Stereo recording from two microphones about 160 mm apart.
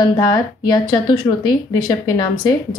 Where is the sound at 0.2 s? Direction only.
25° left (ahead or behind).